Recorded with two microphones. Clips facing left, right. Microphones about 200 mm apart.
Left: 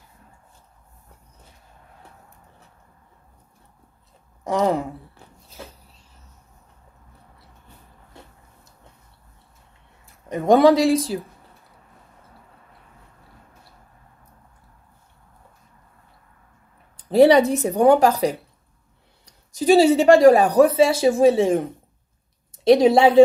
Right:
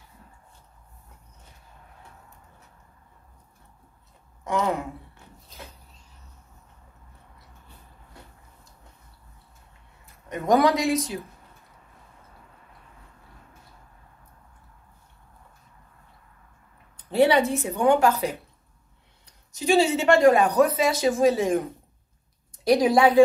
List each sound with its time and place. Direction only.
4.5 s a woman's voice: 35° left (ahead or behind)
10.2 s speech: 30° left (ahead or behind)
16.9 s speech: 35° left (ahead or behind)
19.5 s a woman's voice: 40° left (ahead or behind)
22.7 s speech: 25° left (ahead or behind)